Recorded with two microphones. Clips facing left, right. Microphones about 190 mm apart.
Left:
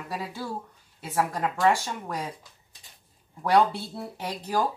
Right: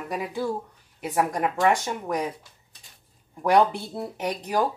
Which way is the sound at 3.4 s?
15° right (ahead or behind).